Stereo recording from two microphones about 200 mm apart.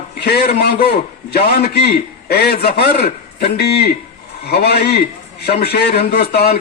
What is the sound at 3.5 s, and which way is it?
A man's voice, 55° left (ahead or behind).